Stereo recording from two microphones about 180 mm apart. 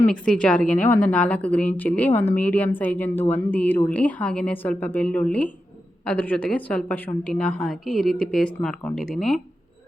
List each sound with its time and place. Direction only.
0.1 s a woman's voice: 5° left (ahead or behind)